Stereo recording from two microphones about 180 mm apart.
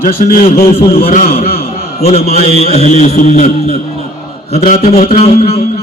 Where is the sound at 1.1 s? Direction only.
45° left (ahead or behind).